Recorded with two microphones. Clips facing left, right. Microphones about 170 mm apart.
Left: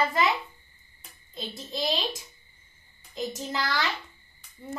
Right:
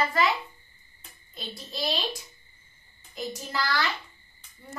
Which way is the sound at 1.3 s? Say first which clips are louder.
Left 3 dB; 20° left (ahead or behind).